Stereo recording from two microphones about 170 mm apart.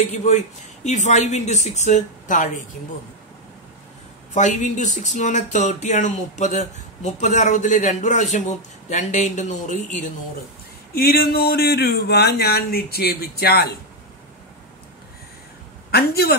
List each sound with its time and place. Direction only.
0.1 s speech: 45° left (ahead or behind)
4.3 s speech: 45° left (ahead or behind)
11.0 s speech: 65° left (ahead or behind)
15.9 s speech: 65° left (ahead or behind)